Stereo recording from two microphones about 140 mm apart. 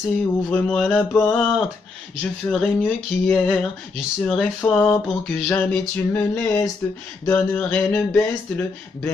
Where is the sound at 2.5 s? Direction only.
5° left (ahead or behind).